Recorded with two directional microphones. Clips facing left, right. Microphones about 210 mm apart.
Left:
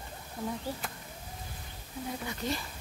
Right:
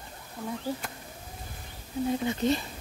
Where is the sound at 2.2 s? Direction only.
25° right (ahead or behind).